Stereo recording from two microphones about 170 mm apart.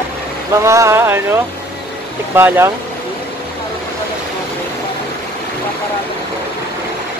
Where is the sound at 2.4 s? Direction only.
15° right (ahead or behind).